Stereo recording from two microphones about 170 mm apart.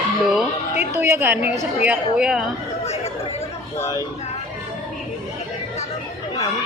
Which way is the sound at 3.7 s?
15° left (ahead or behind).